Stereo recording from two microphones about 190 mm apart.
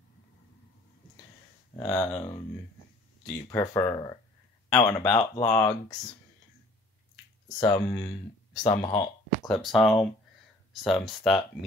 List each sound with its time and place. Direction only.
1.8 s speech: 10° left (ahead or behind)
3.4 s speech: 20° left (ahead or behind)
5.2 s speech: 30° left (ahead or behind)
5.5 s speech: 20° left (ahead or behind)
7.4 s speech: 20° left (ahead or behind)
9.5 s speech: centre (ahead or behind)